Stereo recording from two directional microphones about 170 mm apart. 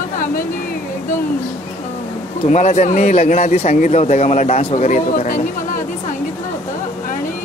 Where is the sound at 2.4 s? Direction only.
45° left (ahead or behind).